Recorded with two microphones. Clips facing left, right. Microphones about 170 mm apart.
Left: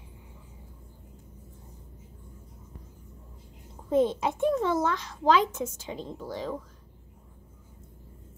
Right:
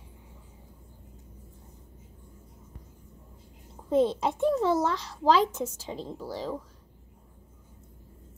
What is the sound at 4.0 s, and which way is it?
A child's voice, 30° right (ahead or behind).